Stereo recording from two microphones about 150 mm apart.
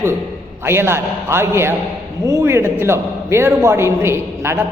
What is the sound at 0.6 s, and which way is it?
A man's voice, 15° right (ahead or behind).